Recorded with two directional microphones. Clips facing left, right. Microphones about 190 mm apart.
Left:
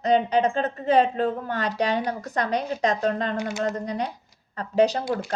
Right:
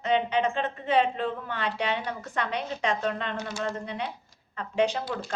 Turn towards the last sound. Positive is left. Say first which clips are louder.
# left 5 dB
turn(degrees=40)  # may be behind; listen again after turning